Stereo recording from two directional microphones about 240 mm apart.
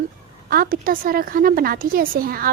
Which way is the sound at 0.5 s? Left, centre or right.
Right.